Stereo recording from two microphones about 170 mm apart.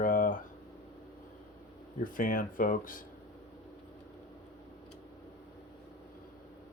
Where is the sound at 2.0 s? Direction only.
55° left (ahead or behind).